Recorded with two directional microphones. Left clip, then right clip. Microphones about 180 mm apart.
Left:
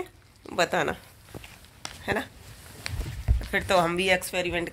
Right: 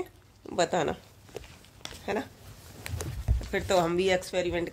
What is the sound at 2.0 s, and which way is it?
Speech, 5° right (ahead or behind).